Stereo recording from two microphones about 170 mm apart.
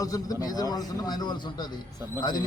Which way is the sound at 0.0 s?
20° left (ahead or behind).